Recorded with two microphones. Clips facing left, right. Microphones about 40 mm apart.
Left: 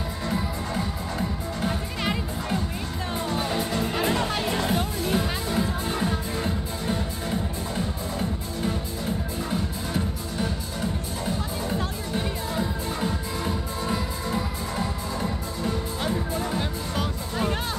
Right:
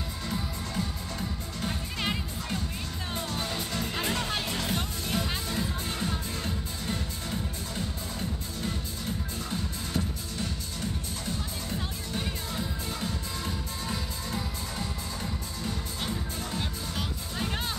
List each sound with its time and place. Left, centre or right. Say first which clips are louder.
0.3 s music: left 6 dB; centre
3.3 s music: left 9 dB; centre
12.2 s music: left 6 dB; centre